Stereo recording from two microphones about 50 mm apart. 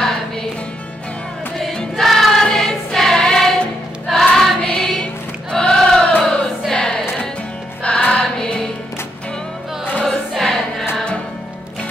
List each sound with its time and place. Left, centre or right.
2.0 s choir: centre
4.6 s music: centre
5.5 s choir: centre
7.8 s music: left
10.0 s choir: centre